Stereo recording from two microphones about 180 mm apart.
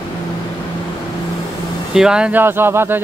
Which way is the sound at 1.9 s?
5° right (ahead or behind).